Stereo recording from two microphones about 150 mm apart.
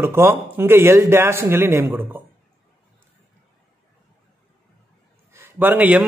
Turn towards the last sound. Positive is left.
turn(degrees=-10)  # may be behind; listen again after turning